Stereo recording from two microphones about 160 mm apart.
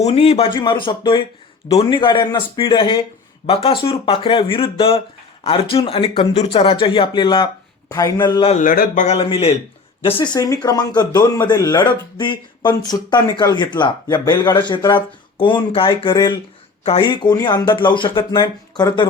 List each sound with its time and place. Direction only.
0.0 s speech: 40° left (ahead or behind)
8.5 s speech: 60° left (ahead or behind)
9.0 s speech: 40° left (ahead or behind)
10.2 s speech: 20° left (ahead or behind)